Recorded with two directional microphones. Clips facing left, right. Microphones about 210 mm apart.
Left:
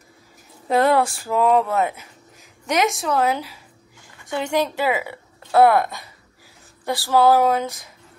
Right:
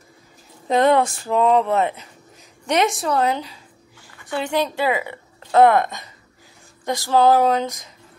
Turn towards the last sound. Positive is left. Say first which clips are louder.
# even
turn(degrees=10)  # may be behind; listen again after turning